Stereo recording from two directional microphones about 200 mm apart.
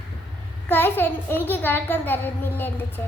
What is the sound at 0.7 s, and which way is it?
A child's voice, 10° left (ahead or behind).